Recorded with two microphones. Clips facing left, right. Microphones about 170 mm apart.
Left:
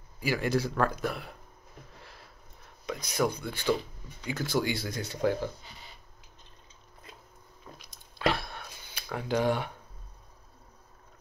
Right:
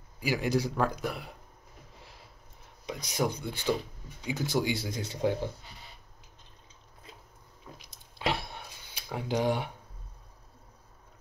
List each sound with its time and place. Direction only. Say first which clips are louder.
0.3 s speech: even; 15° right (ahead or behind)
3.1 s speech: left 1 dB; 20° right (ahead or behind)
7.8 s dog: left 4 dB; 20° right (ahead or behind)
9.1 s speech: left 1 dB; 15° right (ahead or behind)